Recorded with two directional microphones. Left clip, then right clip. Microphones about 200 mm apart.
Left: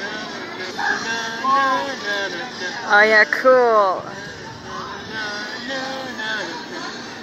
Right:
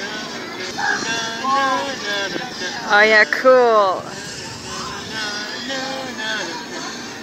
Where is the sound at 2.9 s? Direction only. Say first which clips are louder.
Right 1 dB; 25° right (ahead or behind).